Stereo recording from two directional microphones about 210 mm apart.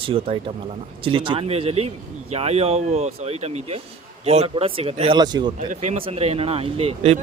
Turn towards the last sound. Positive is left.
turn(degrees=-30)  # may be behind; listen again after turning